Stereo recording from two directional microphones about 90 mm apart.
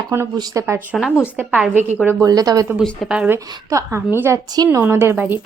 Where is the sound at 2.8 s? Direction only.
5° right (ahead or behind).